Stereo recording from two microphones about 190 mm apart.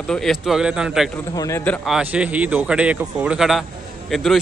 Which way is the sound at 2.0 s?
5° right (ahead or behind).